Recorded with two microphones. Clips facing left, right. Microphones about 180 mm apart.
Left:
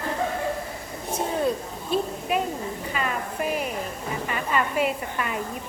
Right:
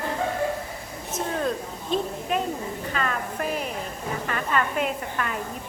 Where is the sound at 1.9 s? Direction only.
10° left (ahead or behind).